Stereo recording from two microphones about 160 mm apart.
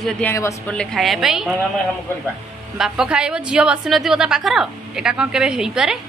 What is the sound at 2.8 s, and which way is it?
A woman's voice, 5° right (ahead or behind).